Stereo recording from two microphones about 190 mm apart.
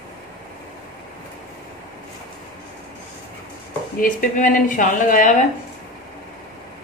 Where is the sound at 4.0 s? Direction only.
45° left (ahead or behind).